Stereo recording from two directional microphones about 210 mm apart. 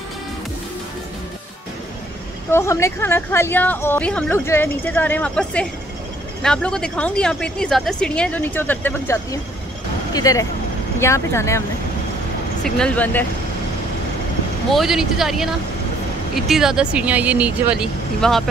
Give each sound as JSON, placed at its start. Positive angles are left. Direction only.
{"t": 2.5, "sound": "a woman's voice", "side_deg": 15}
{"t": 12.6, "sound": "a woman's voice", "side_deg": 5}
{"t": 14.7, "sound": "a woman's voice", "side_deg": 0}